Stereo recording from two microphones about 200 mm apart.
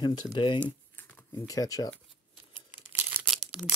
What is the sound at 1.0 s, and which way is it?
Shuffling cards, 15° left (ahead or behind).